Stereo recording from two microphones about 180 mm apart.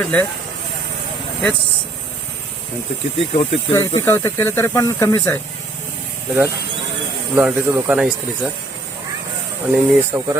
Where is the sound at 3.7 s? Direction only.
20° left (ahead or behind).